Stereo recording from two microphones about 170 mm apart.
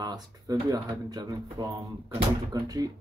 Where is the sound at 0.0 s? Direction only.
20° right (ahead or behind).